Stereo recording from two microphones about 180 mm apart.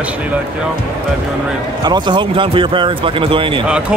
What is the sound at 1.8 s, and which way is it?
Speech, 25° right (ahead or behind).